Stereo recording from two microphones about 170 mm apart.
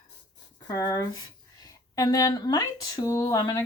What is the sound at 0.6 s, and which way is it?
Speech, 20° left (ahead or behind).